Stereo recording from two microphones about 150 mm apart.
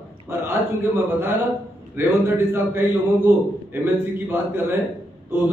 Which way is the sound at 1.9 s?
15° right (ahead or behind).